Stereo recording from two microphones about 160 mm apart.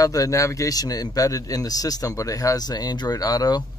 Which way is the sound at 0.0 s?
20° left (ahead or behind).